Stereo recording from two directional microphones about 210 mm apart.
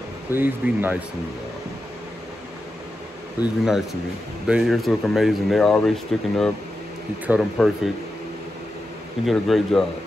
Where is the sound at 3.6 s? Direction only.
Centre (ahead or behind).